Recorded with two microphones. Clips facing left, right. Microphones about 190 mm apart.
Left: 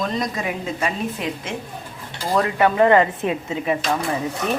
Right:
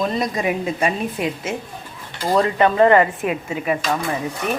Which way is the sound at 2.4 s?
20° right (ahead or behind).